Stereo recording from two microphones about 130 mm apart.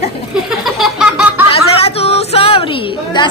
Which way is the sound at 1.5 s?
50° left (ahead or behind).